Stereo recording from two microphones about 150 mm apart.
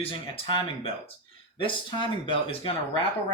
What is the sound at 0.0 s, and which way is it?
Speech, 40° left (ahead or behind).